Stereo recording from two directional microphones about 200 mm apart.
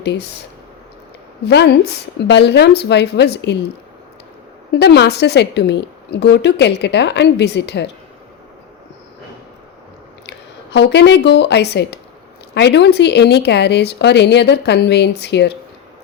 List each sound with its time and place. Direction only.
0.0 s a woman's voice: 60° left (ahead or behind)
1.5 s a woman's voice: 55° left (ahead or behind)
4.7 s a woman's voice: 55° left (ahead or behind)
10.2 s a woman's voice: 60° left (ahead or behind)